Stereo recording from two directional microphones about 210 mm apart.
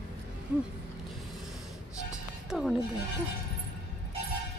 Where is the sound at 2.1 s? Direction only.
Centre (ahead or behind).